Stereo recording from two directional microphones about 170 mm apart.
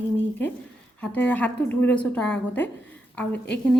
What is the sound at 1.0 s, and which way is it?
A woman's voice, 10° left (ahead or behind).